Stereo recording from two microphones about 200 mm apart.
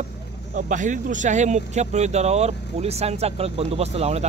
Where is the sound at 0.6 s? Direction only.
40° right (ahead or behind).